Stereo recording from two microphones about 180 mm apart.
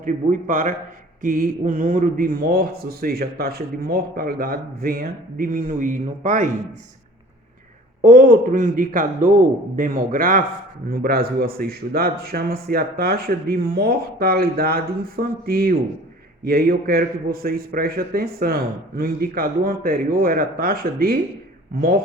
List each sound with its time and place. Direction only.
0.0 s a man's voice: 50° right (ahead or behind)
8.0 s a man's voice: 45° right (ahead or behind)